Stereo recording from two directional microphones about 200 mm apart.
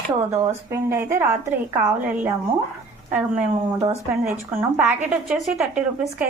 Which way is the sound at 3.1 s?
10° right (ahead or behind).